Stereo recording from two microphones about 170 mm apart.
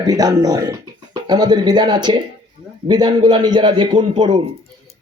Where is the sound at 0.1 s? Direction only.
20° right (ahead or behind).